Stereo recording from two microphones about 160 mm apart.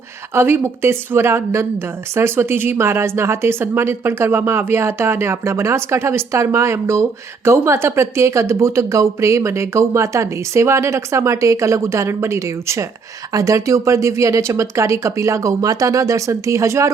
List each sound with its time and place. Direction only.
0.3 s a woman's voice: 15° right (ahead or behind)